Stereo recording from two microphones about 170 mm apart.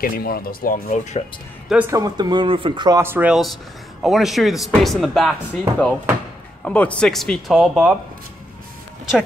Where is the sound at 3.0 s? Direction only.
10° right (ahead or behind).